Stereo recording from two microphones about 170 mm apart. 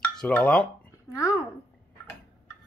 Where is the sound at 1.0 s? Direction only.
20° left (ahead or behind).